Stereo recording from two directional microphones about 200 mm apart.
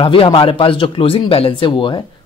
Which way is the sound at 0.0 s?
25° left (ahead or behind).